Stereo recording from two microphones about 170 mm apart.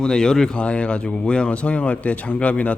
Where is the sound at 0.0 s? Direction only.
5° left (ahead or behind).